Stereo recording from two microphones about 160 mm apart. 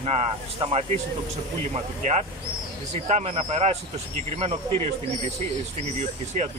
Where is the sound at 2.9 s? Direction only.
40° right (ahead or behind).